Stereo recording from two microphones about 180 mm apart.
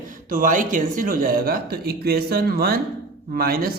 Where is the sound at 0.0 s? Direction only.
50° right (ahead or behind).